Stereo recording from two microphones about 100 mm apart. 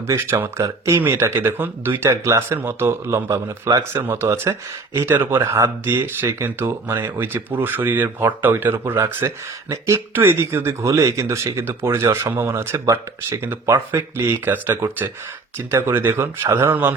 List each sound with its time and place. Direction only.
0.1 s speech: 25° right (ahead or behind)
4.0 s speech: 25° right (ahead or behind)